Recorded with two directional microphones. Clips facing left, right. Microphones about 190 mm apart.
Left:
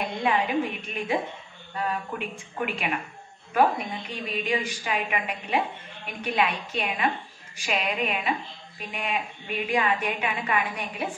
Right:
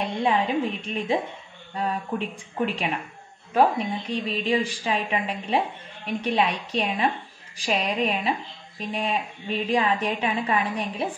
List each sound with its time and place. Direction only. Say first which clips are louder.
0.0 s a woman's voice: right 2 dB; 30° right (ahead or behind)
4.1 s speech: right 3 dB; 30° right (ahead or behind)